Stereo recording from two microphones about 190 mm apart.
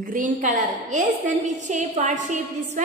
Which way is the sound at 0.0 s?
45° right (ahead or behind).